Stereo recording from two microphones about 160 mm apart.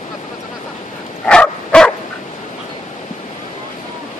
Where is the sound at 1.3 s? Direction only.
5° left (ahead or behind).